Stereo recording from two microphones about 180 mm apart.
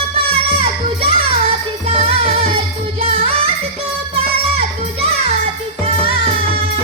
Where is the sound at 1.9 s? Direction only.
35° right (ahead or behind).